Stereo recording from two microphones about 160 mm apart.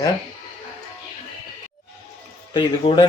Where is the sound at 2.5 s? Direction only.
30° left (ahead or behind).